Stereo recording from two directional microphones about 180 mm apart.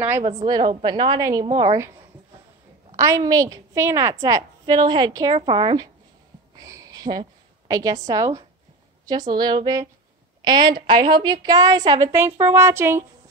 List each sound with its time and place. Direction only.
0.4 s a woman's voice: 25° right (ahead or behind)
3.0 s a woman's voice: 20° right (ahead or behind)